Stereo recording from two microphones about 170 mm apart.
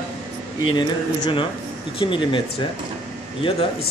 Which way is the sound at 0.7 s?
25° left (ahead or behind).